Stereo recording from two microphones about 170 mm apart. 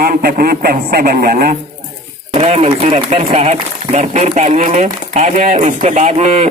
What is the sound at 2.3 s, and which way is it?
Speech, 40° right (ahead or behind).